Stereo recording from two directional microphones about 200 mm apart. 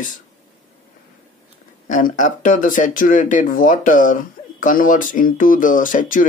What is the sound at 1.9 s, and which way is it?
Speech, 40° left (ahead or behind).